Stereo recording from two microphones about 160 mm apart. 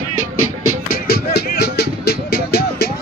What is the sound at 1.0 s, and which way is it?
Music, 80° left.